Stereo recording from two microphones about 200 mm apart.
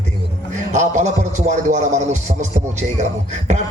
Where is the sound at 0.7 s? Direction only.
35° right (ahead or behind).